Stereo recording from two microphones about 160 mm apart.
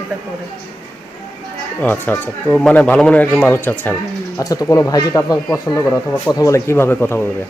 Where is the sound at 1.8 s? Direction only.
10° left (ahead or behind).